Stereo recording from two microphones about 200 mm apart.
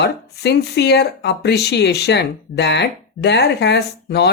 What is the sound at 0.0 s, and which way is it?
Speech, 55° left (ahead or behind).